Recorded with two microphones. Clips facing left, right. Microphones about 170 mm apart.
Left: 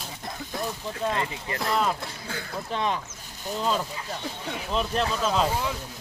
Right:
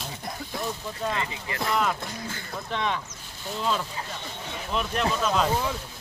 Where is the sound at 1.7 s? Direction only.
30° left (ahead or behind).